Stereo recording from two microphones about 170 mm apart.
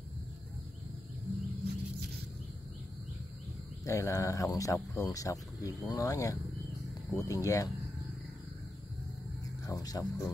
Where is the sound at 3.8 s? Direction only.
15° left (ahead or behind).